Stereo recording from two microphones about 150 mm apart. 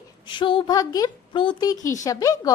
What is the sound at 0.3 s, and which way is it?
Speech, 35° left (ahead or behind).